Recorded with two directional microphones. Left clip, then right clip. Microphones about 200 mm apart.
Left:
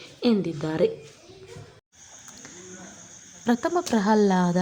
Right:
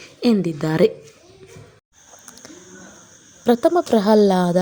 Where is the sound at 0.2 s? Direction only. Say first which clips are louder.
Right 5 dB; 20° right (ahead or behind).